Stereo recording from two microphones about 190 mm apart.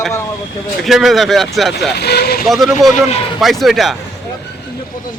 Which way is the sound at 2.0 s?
60° left (ahead or behind).